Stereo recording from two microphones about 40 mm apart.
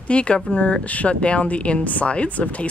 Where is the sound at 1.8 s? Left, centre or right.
Left.